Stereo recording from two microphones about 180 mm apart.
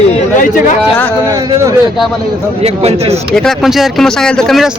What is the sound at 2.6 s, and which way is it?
Speech, 35° right (ahead or behind).